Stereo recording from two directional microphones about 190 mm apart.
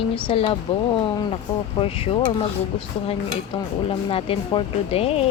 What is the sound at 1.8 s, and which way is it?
Speech, 30° left (ahead or behind).